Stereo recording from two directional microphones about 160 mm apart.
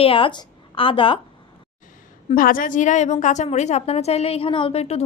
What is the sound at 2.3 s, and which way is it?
A woman's voice, 60° left (ahead or behind).